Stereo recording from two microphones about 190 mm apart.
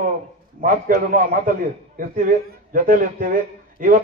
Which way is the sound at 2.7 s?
45° right (ahead or behind).